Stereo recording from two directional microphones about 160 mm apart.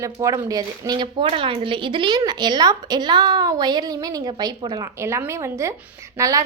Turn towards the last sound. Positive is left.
turn(degrees=-20)  # may be behind; listen again after turning